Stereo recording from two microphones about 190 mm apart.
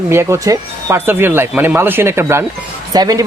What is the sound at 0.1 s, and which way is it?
Speech, 15° right (ahead or behind).